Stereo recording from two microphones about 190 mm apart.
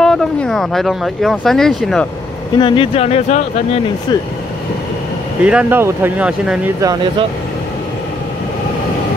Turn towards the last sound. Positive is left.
turn(degrees=-20)  # may be behind; listen again after turning